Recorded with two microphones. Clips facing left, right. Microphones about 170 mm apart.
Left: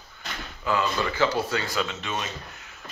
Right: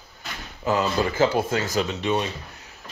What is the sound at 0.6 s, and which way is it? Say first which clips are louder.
Speech: right 3 dB; 40° right (ahead or behind).